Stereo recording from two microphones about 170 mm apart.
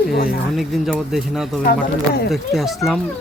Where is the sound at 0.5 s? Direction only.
Centre (ahead or behind).